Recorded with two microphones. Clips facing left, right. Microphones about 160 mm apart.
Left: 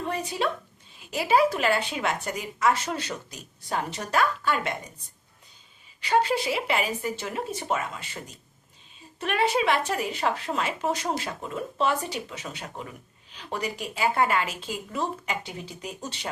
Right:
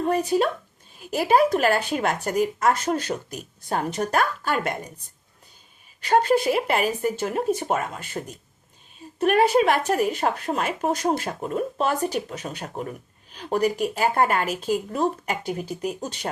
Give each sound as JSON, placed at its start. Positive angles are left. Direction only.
{"t": 0.0, "sound": "a woman's voice", "side_deg": -45}
{"t": 6.0, "sound": "a woman's voice", "side_deg": -50}